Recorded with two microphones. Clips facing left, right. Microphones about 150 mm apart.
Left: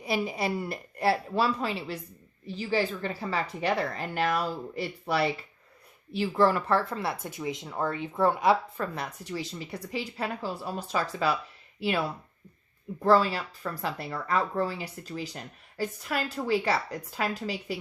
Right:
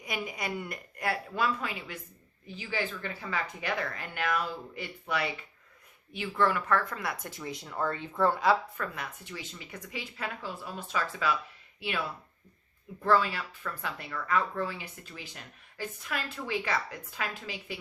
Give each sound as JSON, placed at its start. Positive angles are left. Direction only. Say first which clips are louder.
{"t": 0.0, "sound": "speech", "louder": "left 7 dB", "side_deg": 30}
{"t": 9.0, "sound": "speech", "louder": "left 6 dB", "side_deg": 35}